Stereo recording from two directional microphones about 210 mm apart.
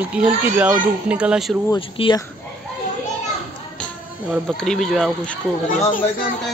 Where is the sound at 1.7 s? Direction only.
25° left (ahead or behind).